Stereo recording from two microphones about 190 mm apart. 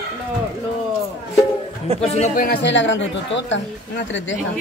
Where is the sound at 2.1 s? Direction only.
40° left (ahead or behind); by 3.6 s 75° left (ahead or behind).